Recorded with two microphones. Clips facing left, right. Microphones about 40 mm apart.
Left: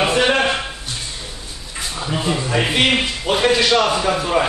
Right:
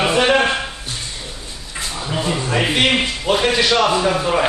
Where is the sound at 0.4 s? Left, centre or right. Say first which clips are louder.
Right 1 dB; centre.